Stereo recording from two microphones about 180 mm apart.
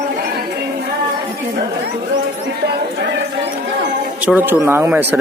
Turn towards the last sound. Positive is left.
turn(degrees=-10)  # may be behind; listen again after turning